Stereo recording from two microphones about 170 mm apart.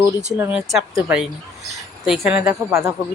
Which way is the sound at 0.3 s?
10° right (ahead or behind).